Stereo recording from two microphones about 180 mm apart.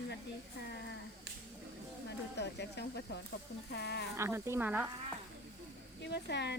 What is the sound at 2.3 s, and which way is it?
Speech, 70° left (ahead or behind).